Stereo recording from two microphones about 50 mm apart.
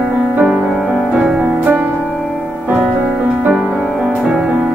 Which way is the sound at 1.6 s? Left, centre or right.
Right.